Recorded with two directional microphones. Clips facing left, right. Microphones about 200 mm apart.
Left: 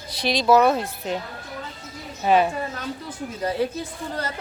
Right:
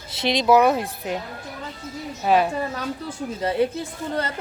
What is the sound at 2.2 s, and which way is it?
Speech, centre (ahead or behind).